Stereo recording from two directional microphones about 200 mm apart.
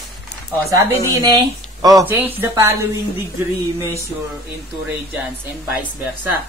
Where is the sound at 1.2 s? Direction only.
20° right (ahead or behind).